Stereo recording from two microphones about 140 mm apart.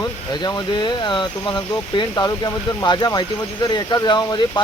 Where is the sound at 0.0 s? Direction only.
30° left (ahead or behind).